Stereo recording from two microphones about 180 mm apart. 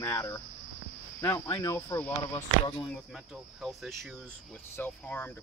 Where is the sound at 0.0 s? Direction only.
15° left (ahead or behind).